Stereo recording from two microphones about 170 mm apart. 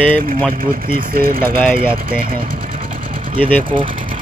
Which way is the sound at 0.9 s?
60° right (ahead or behind).